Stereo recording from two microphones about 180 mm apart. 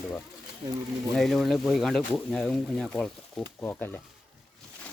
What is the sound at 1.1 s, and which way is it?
Speech, centre (ahead or behind).